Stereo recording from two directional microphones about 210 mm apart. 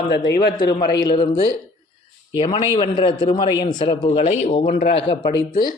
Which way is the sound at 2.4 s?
25° left (ahead or behind).